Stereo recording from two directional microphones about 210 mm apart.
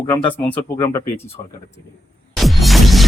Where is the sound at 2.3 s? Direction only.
Centre (ahead or behind).